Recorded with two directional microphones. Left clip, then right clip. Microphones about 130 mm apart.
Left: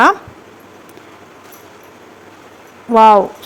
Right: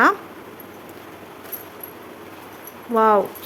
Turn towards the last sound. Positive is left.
turn(degrees=40)  # may be behind; listen again after turning